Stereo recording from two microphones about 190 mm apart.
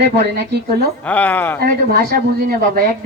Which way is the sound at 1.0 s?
10° left (ahead or behind).